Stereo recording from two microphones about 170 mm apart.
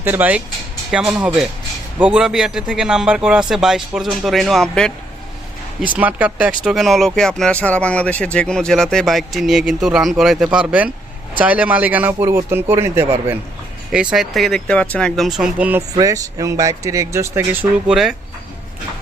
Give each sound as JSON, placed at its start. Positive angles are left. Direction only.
{"t": 0.0, "sound": "speech", "side_deg": -10}
{"t": 5.9, "sound": "speech", "side_deg": -10}
{"t": 16.0, "sound": "speech", "side_deg": -20}